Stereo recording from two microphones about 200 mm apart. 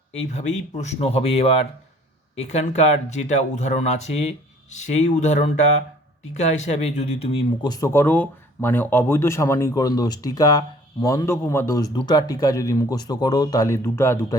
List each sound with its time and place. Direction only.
0.1 s speech: 35° left (ahead or behind); by 14.3 s 15° left (ahead or behind)